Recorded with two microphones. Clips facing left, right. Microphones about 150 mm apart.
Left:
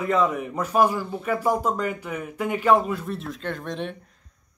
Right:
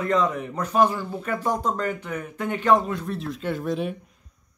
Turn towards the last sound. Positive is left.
turn(degrees=-5)  # may be behind; listen again after turning